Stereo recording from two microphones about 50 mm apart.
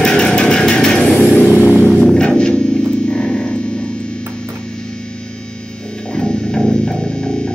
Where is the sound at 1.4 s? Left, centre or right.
Left; by 3.5 s centre.